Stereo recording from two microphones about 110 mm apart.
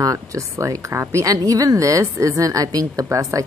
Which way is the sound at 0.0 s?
30° right (ahead or behind).